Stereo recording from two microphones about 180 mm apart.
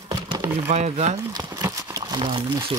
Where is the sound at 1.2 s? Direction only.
20° right (ahead or behind).